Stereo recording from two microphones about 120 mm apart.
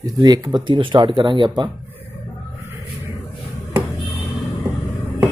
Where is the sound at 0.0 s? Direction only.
30° right (ahead or behind).